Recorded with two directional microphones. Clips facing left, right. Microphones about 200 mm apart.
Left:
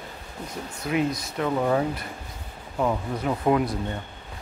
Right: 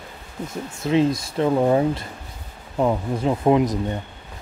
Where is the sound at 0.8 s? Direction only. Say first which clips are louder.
Right 6 dB; 25° right (ahead or behind).